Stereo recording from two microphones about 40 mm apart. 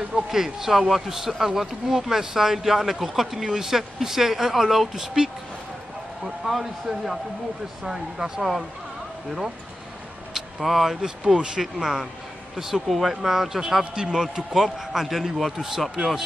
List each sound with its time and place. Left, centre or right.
0.3 s speech: centre
5.0 s speech: centre
6.2 s speech: centre
10.3 s speech: centre